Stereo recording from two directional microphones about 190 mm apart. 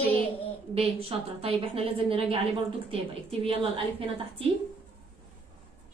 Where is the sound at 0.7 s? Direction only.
30° right (ahead or behind).